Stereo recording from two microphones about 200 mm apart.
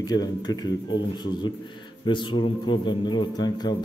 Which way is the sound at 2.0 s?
25° left (ahead or behind).